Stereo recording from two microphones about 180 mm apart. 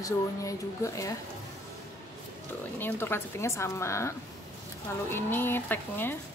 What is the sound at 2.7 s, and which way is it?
Speech, 10° left (ahead or behind).